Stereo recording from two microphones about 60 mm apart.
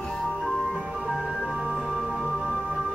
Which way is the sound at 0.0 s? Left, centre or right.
Centre.